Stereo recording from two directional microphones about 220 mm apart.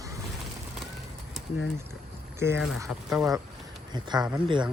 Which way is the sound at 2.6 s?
Centre (ahead or behind).